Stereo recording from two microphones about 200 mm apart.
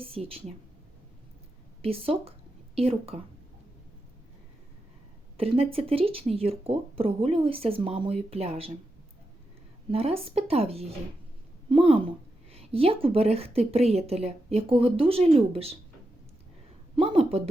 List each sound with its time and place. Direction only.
0.0 s a woman's voice: 30° right (ahead or behind)
1.8 s a woman's voice: 30° right (ahead or behind)
5.4 s a woman's voice: 30° right (ahead or behind)
9.9 s a woman's voice: 30° right (ahead or behind)
16.9 s speech: 30° right (ahead or behind)